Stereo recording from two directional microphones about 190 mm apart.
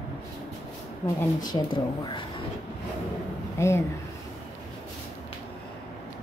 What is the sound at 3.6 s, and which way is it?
Speech, 15° left (ahead or behind).